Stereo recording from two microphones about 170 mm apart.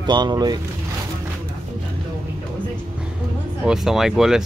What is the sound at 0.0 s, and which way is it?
Speech, 25° right (ahead or behind).